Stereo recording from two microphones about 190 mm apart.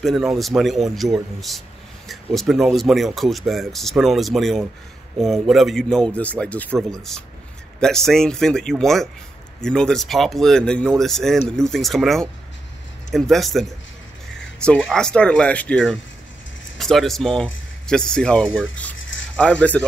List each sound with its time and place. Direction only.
0.0 s speech: centre (ahead or behind)
18.9 s a sound: 85° left
19.3 s speech: 5° left (ahead or behind)